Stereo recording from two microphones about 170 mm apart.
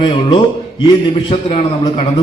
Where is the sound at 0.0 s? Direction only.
25° left (ahead or behind).